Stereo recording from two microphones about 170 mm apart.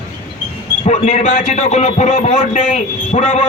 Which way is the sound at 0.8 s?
40° left (ahead or behind).